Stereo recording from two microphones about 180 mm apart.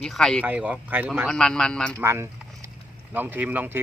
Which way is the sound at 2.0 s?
15° right (ahead or behind).